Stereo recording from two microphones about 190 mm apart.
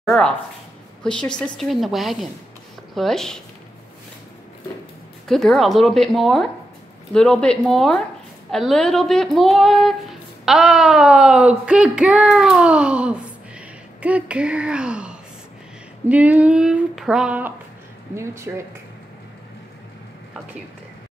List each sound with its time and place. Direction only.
0.0 s speech: 5° left (ahead or behind)
5.3 s speech: centre (ahead or behind)